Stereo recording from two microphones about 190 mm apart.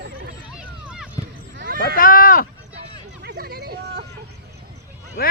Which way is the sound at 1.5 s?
50° right (ahead or behind).